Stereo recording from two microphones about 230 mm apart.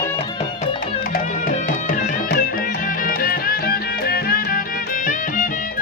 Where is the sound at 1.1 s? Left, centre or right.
Left.